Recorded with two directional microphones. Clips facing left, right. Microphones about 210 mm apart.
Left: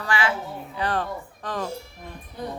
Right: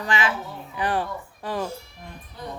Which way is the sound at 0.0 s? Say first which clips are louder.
Even; 20° right (ahead or behind).